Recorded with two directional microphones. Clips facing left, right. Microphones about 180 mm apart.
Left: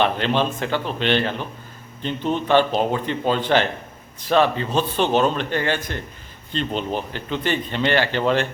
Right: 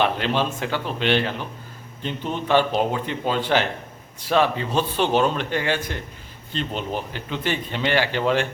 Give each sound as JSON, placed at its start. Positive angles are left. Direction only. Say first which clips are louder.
{"t": 0.0, "sound": "speech", "louder": "left 2 dB", "side_deg": -10}